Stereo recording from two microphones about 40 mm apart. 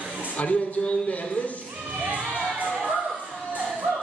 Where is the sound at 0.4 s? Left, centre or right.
Left.